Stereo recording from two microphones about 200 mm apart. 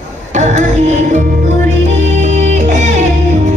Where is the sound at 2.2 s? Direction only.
35° right (ahead or behind).